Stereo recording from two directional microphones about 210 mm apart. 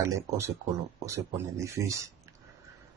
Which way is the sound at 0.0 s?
15° right (ahead or behind).